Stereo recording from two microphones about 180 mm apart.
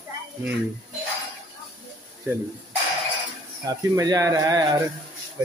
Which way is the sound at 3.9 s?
20° right (ahead or behind).